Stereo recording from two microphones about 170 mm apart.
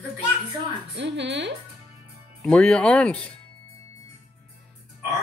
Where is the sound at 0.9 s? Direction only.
90° right.